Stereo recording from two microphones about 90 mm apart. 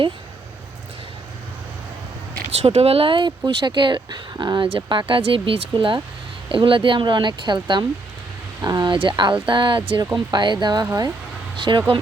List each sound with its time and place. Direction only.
2.6 s speech: 90° right; by 8.9 s 50° right (ahead or behind)
8.9 s speech: 65° right (ahead or behind)
10.3 s speech: 55° right (ahead or behind)
10.8 s speech: 40° right (ahead or behind)
11.5 s speech: 65° right (ahead or behind)